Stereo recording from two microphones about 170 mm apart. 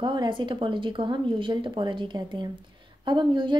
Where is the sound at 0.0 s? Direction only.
30° right (ahead or behind).